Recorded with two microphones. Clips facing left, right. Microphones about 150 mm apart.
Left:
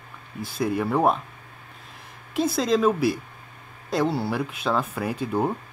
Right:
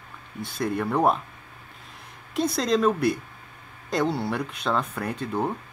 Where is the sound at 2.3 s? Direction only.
5° left (ahead or behind).